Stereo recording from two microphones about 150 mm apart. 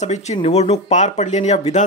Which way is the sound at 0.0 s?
50° left (ahead or behind).